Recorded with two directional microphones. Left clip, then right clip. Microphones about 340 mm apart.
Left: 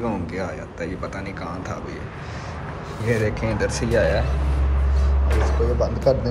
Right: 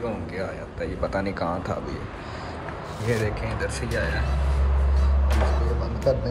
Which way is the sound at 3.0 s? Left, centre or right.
Centre.